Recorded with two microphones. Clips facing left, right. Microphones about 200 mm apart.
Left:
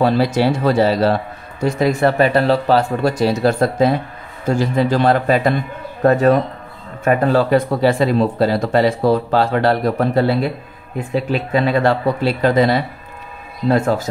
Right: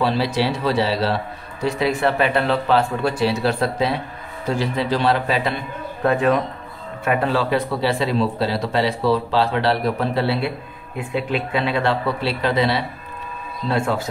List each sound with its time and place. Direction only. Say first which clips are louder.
0.0 s a man's voice: left 5 dB; 45° left (ahead or behind)